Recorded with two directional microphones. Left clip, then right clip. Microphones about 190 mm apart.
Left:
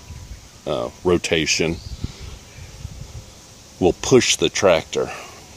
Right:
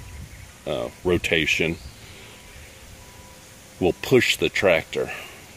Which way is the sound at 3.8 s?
15° left (ahead or behind).